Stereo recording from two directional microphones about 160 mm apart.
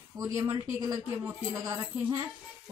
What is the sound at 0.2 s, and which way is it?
A woman's voice, 20° right (ahead or behind).